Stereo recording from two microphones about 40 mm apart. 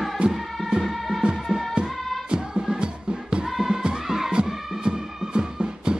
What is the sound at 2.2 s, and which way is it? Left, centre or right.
Music, right.